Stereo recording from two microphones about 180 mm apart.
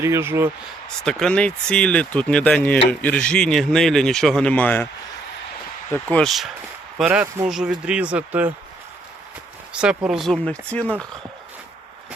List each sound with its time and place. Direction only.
0.0 s speech: 15° right (ahead or behind)
1.0 s speech: 5° left (ahead or behind)
5.9 s speech: 5° left (ahead or behind); by 8.5 s 10° right (ahead or behind)
9.7 s speech: 5° right (ahead or behind)